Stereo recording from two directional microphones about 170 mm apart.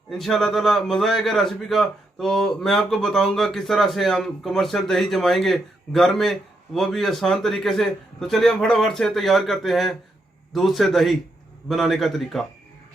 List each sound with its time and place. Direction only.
0.1 s a man's voice: centre (ahead or behind)